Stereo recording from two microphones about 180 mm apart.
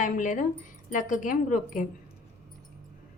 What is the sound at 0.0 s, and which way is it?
A woman's voice, 45° left (ahead or behind).